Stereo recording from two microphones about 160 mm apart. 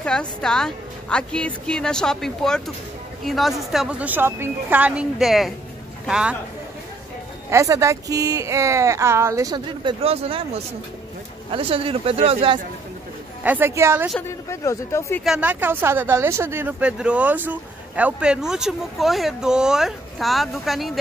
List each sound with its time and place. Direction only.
0.0 s speech: 5° left (ahead or behind)
7.4 s speech: 20° right (ahead or behind); by 12.5 s 35° right (ahead or behind)
13.4 s speech: 10° right (ahead or behind)
14.2 s speech: 20° left (ahead or behind)
15.2 s speech: 5° right (ahead or behind)